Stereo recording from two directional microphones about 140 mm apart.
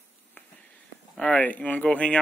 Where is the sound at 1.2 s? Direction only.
10° left (ahead or behind).